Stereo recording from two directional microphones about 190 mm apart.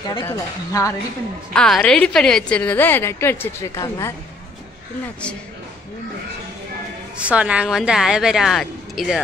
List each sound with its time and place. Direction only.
0.1 s a woman's voice: 15° left (ahead or behind)
1.5 s a woman's voice: 5° left (ahead or behind)
7.2 s speech: 5° right (ahead or behind)